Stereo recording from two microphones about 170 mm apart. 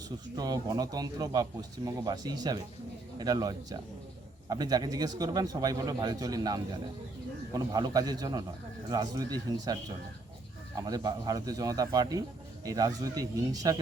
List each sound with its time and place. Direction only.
0.3 s speech: 25° right (ahead or behind)
10.8 s speech: 25° right (ahead or behind)